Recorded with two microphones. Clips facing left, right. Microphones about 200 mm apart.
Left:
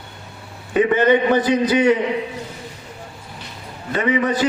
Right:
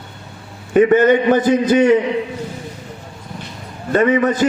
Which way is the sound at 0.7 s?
45° right (ahead or behind).